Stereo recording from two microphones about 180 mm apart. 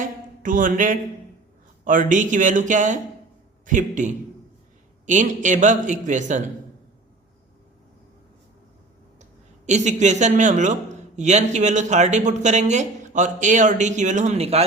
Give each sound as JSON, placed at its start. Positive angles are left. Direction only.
{"t": 0.0, "sound": "a man's voice", "side_deg": -50}
{"t": 9.6, "sound": "speech", "side_deg": -40}